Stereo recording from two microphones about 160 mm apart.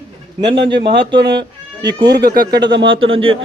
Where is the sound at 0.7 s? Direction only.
90° right.